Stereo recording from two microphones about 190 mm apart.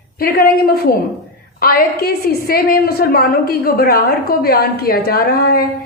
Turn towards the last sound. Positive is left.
turn(degrees=55)  # may be behind; listen again after turning